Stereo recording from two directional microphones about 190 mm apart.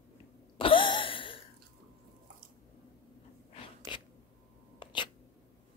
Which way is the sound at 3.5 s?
30° left (ahead or behind).